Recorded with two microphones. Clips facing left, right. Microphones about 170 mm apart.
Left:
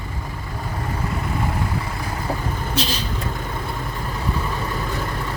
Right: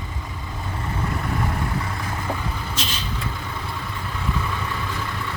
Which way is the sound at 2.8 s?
35° left (ahead or behind).